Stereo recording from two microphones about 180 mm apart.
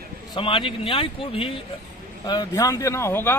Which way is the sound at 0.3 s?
30° left (ahead or behind).